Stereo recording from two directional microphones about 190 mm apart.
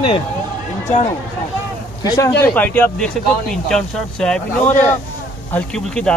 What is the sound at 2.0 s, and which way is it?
Speech, 20° left (ahead or behind).